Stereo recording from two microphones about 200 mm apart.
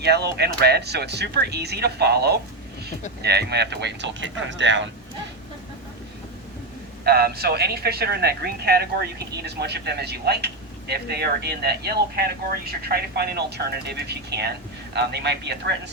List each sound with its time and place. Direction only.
0.0 s speech: 55° right (ahead or behind)
7.0 s a man's voice: 50° right (ahead or behind)